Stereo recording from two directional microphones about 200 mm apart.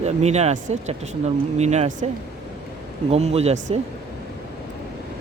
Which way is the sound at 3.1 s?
30° right (ahead or behind).